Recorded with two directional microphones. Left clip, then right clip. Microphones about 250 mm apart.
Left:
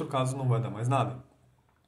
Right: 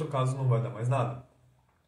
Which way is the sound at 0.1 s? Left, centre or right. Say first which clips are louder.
Left 2 dB; left.